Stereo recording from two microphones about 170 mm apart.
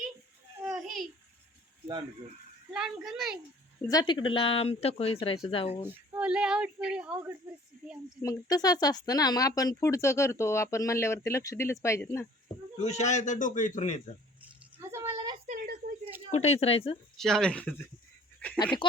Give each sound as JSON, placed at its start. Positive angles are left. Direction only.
{"t": 0.6, "sound": "babbling", "side_deg": -5}
{"t": 2.7, "sound": "a child's voice", "side_deg": 0}
{"t": 3.8, "sound": "speech", "side_deg": 20}
{"t": 5.8, "sound": "speech", "side_deg": -10}
{"t": 8.2, "sound": "speech", "side_deg": 20}
{"t": 12.8, "sound": "a man's voice", "side_deg": 40}
{"t": 14.8, "sound": "a sound", "side_deg": -15}
{"t": 15.4, "sound": "a sound", "side_deg": -45}
{"t": 16.3, "sound": "speech", "side_deg": 40}
{"t": 17.2, "sound": "a child's voice", "side_deg": 0}